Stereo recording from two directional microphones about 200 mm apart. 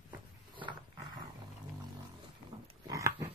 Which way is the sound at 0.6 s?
20° right (ahead or behind).